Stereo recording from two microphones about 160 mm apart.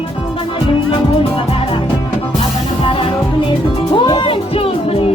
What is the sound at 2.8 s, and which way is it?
Music, 35° left (ahead or behind).